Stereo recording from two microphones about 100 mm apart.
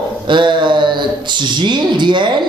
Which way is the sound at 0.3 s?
50° right (ahead or behind).